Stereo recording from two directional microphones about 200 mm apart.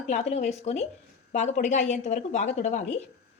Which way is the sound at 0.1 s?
35° left (ahead or behind).